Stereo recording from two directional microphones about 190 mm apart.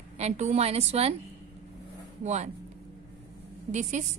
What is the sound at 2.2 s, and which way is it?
Speech, 35° right (ahead or behind).